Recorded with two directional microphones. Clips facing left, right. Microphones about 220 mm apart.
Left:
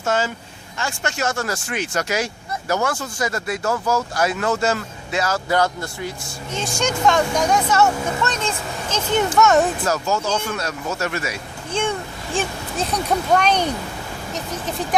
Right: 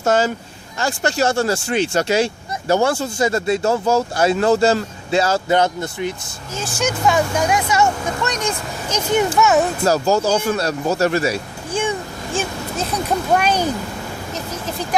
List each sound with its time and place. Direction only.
0.0 s speech: 40° right (ahead or behind); by 6.1 s 20° right (ahead or behind)
6.7 s speech: 5° right (ahead or behind)
9.8 s speech: 35° right (ahead or behind)
11.7 s a sound: 5° right (ahead or behind)
12.9 s speech: 5° right (ahead or behind)